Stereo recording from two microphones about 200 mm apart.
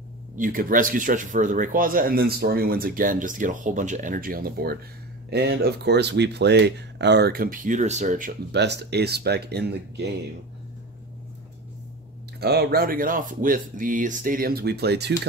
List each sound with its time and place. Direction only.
0.4 s speech: 45° right (ahead or behind)
8.5 s speech: 60° right (ahead or behind)
12.4 s speech: 55° right (ahead or behind)